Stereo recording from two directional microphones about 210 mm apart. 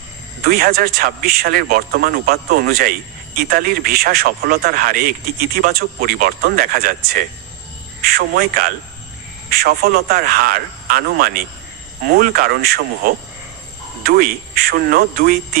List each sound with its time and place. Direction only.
0.4 s a man's voice: 45° right (ahead or behind)